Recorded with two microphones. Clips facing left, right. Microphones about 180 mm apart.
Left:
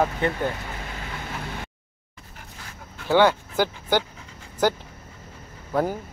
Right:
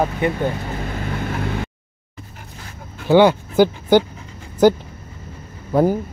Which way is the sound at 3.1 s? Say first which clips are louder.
Right 6 dB; 15° right (ahead or behind).